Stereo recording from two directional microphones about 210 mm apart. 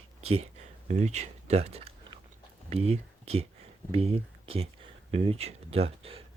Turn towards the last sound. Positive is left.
turn(degrees=-25)  # may be behind; listen again after turning